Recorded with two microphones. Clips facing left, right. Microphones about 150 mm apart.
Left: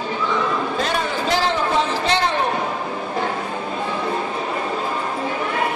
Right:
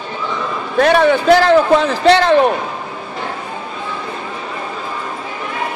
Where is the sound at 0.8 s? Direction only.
70° right (ahead or behind).